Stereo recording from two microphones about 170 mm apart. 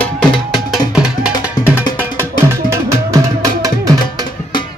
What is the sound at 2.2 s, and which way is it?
Music, 15° right (ahead or behind).